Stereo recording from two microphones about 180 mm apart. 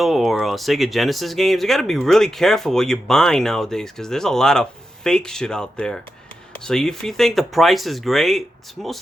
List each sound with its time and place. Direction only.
0.0 s speech: centre (ahead or behind)